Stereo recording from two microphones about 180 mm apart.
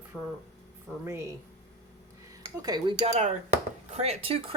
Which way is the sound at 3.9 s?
35° right (ahead or behind).